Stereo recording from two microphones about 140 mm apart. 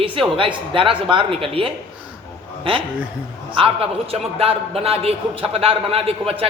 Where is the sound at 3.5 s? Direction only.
40° right (ahead or behind).